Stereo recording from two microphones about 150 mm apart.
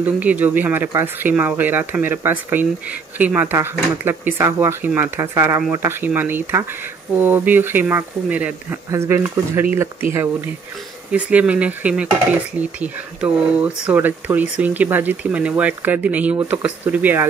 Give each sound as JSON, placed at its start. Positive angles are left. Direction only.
{"t": 0.0, "sound": "speech", "side_deg": -10}
{"t": 13.8, "sound": "speech", "side_deg": -10}